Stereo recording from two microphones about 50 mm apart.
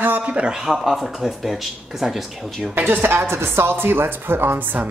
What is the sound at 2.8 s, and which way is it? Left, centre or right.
Speech, right.